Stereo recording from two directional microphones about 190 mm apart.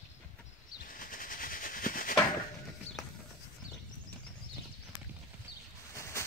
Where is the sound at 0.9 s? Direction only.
45° left (ahead or behind).